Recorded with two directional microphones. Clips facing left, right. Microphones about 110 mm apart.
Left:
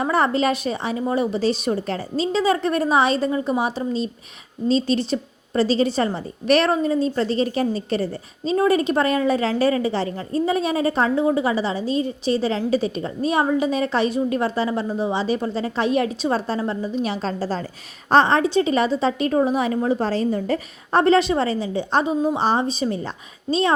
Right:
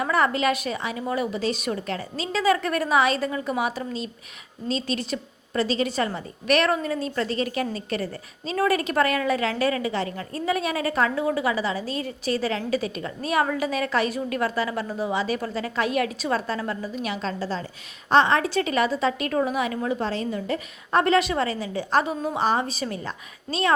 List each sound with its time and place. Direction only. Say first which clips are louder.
0.0 s a woman's voice: left 3 dB; 30° left (ahead or behind)